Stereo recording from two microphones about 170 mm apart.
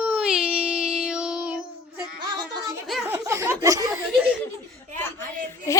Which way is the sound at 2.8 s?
Centre (ahead or behind).